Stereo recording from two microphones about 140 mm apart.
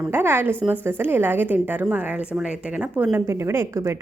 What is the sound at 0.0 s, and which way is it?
A woman's voice, 15° right (ahead or behind).